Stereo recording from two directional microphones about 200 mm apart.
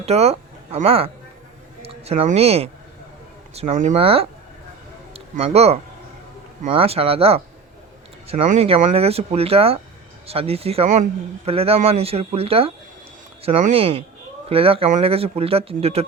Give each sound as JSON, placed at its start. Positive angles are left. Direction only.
{"t": 0.0, "sound": "a man's voice", "side_deg": -30}